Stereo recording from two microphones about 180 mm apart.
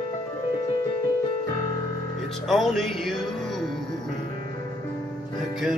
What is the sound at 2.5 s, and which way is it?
Music, centre (ahead or behind).